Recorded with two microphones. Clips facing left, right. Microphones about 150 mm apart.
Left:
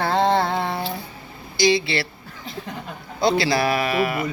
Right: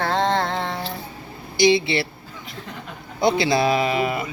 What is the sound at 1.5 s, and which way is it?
Speech, 20° right (ahead or behind).